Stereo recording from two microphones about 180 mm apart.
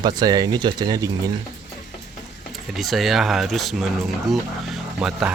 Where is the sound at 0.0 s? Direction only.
20° right (ahead or behind).